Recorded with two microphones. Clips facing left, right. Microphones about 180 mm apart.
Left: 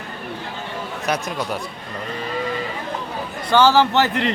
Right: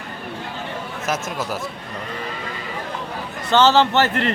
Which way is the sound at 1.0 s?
Centre (ahead or behind).